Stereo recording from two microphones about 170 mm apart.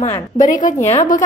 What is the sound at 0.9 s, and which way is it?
Speech, 45° left (ahead or behind).